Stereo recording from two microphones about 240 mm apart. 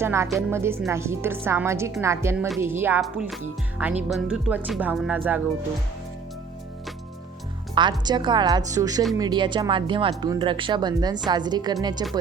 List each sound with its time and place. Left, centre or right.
0.0 s a woman's voice: centre
7.8 s a woman's voice: centre